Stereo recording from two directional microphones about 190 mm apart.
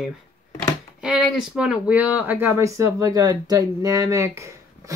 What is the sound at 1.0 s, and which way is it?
Speech, centre (ahead or behind).